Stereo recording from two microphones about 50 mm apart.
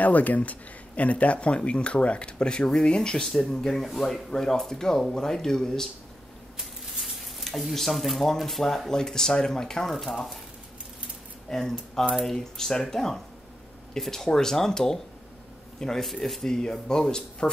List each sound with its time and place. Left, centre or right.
0.0 s speech: left; by 5.9 s centre
7.4 s speech: centre
11.5 s speech: centre